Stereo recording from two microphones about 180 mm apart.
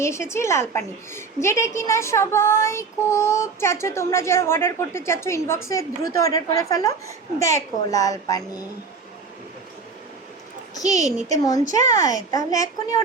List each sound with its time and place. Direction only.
0.0 s a woman's voice: 15° left (ahead or behind)
10.8 s a child's voice: 20° left (ahead or behind)